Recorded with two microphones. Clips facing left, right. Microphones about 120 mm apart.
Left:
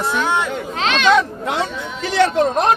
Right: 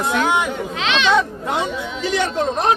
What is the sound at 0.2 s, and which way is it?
Speech, 15° right (ahead or behind).